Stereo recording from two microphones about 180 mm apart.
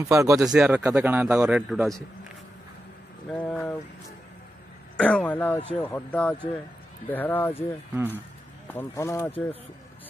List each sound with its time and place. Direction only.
0.0 s speech: 15° right (ahead or behind)
0.4 s a man's voice: 5° right (ahead or behind)
3.3 s speech: 10° left (ahead or behind)
4.9 s speech: 5° left (ahead or behind)
8.7 s speech: 15° left (ahead or behind)